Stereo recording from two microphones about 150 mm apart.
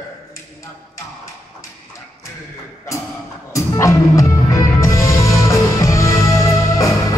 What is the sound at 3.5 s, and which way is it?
Music, 20° left (ahead or behind).